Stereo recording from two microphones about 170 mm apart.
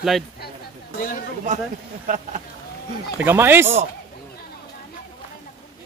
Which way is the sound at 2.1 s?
50° right (ahead or behind).